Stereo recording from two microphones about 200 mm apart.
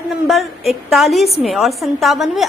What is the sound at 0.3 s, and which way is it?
A woman's voice, centre (ahead or behind).